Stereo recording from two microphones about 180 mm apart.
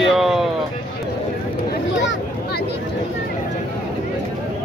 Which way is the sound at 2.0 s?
80° left.